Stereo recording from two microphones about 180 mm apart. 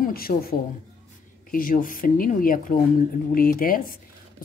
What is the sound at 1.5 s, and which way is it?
Speech, 50° left (ahead or behind).